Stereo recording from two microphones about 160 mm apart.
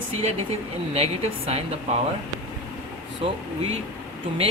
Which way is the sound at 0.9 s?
40° right (ahead or behind).